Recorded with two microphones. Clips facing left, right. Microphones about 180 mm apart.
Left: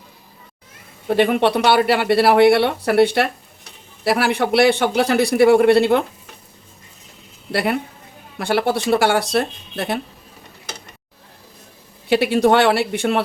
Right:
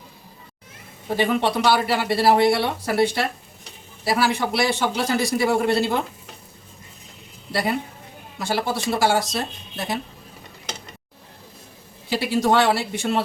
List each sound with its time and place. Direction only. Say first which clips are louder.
1.0 s speech: left 5 dB; 65° left (ahead or behind)
7.5 s speech: left 3 dB; 65° left (ahead or behind)
12.0 s speech: left 6 dB; 65° left (ahead or behind)